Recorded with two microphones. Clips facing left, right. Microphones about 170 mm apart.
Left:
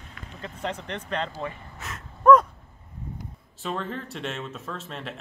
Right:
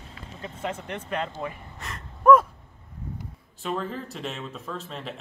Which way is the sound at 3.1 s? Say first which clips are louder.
Even; centre (ahead or behind).